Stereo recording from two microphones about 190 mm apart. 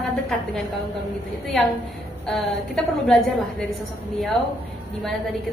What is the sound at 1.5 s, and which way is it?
A woman's voice, centre (ahead or behind).